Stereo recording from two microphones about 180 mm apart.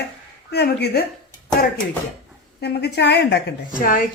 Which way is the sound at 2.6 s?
70° left (ahead or behind).